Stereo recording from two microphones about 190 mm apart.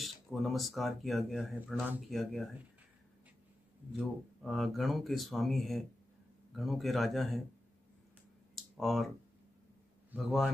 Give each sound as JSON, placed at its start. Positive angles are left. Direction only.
{"t": 0.0, "sound": "speech", "side_deg": 0}
{"t": 3.9, "sound": "speech", "side_deg": 0}
{"t": 8.5, "sound": "speech", "side_deg": 0}
{"t": 10.1, "sound": "speech", "side_deg": -5}